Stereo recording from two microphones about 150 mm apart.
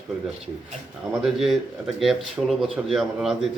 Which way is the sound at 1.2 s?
Centre (ahead or behind).